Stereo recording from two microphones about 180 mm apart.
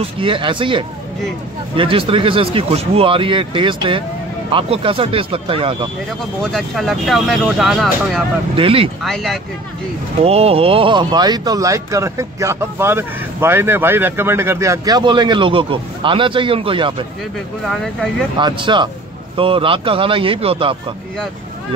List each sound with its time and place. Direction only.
0.0 s speech: 30° right (ahead or behind)
6.4 s speech: centre (ahead or behind)
8.5 s speech: 30° right (ahead or behind)
9.0 s speech: centre (ahead or behind)
10.2 s speech: 35° right (ahead or behind)
18.4 s speech: 25° right (ahead or behind)